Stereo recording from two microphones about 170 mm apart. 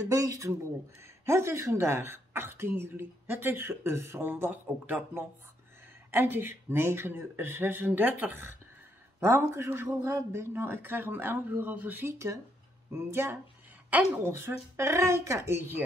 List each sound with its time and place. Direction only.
0.1 s a woman's voice: 20° right (ahead or behind)